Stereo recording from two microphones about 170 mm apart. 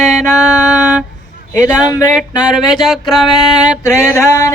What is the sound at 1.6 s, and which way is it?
Speech, 20° left (ahead or behind).